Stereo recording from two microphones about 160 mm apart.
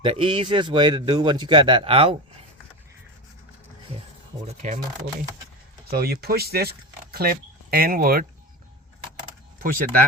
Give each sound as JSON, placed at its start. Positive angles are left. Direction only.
{"t": 0.0, "sound": "a man's voice", "side_deg": -35}
{"t": 5.9, "sound": "speech", "side_deg": -75}
{"t": 9.6, "sound": "speech", "side_deg": -60}